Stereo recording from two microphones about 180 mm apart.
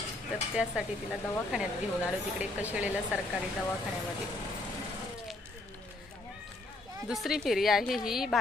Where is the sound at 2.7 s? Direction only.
10° right (ahead or behind).